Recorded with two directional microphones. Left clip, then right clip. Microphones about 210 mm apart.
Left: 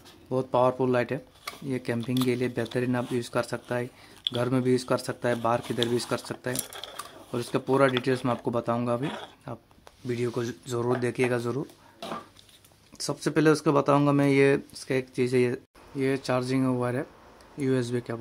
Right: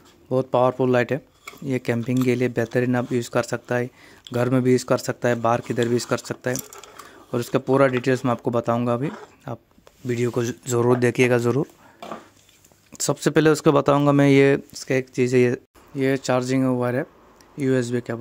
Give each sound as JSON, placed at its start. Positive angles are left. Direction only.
{"t": 0.3, "sound": "speech", "side_deg": -30}
{"t": 12.9, "sound": "speech", "side_deg": -40}